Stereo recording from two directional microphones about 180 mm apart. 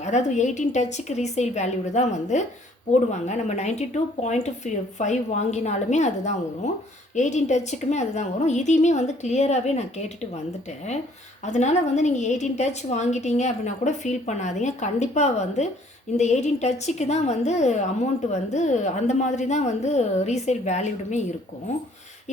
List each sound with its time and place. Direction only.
0.0 s a woman's voice: 40° left (ahead or behind)
11.4 s a woman's voice: 40° left (ahead or behind)